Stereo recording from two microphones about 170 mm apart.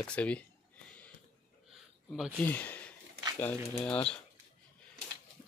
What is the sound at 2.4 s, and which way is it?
Speech, 10° left (ahead or behind).